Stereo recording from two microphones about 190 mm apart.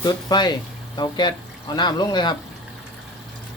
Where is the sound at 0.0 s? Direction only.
20° left (ahead or behind).